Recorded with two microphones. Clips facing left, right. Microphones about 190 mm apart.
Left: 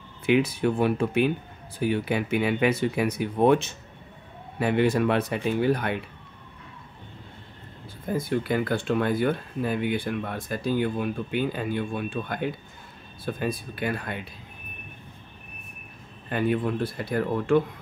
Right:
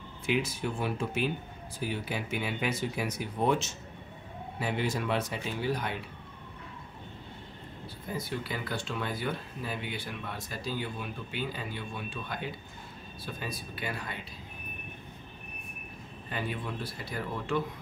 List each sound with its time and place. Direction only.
0.3 s speech: 60° left (ahead or behind)
8.1 s speech: 50° left (ahead or behind)
16.3 s speech: 55° left (ahead or behind)